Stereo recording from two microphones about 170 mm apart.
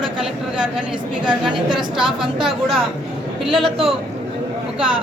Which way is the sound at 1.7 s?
5° right (ahead or behind).